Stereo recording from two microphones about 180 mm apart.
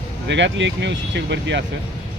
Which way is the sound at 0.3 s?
80° right.